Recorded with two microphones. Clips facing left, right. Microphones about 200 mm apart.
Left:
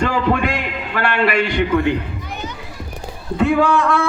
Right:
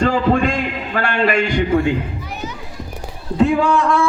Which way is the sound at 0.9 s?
40° right (ahead or behind).